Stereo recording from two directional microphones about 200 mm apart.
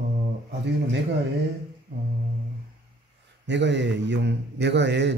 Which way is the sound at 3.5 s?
60° right (ahead or behind).